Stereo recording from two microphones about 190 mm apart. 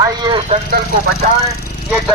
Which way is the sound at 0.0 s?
20° right (ahead or behind).